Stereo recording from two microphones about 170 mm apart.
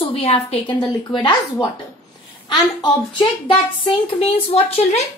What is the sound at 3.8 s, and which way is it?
Speech, 35° left (ahead or behind).